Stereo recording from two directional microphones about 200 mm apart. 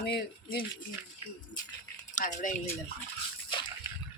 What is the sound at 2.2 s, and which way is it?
Speech, 40° left (ahead or behind).